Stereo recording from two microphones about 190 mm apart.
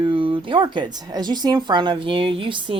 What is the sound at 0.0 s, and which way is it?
Speech, 25° right (ahead or behind).